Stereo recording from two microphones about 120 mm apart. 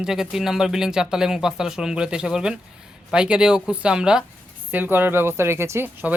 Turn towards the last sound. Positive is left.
turn(degrees=-20)  # may be behind; listen again after turning